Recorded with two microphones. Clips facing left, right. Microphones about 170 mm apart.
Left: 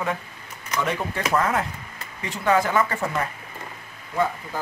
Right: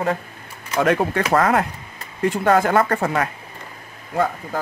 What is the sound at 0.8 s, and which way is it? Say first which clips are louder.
Speech: right 8 dB; 65° right (ahead or behind).